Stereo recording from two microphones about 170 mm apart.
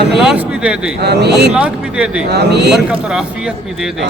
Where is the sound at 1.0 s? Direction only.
75° right (ahead or behind).